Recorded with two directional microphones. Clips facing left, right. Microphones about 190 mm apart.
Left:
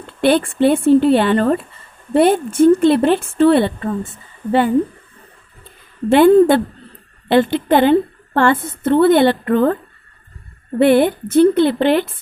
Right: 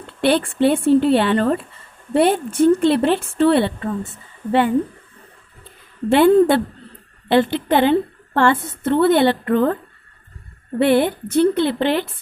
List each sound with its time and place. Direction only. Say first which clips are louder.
0.2 s a woman's voice: left 3 dB; 45° left (ahead or behind)
6.1 s a woman's voice: left 3 dB; 50° left (ahead or behind)
10.8 s a woman's voice: left 4 dB; 50° left (ahead or behind)